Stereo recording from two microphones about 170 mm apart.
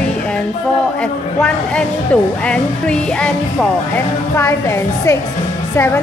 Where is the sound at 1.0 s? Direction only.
5° left (ahead or behind).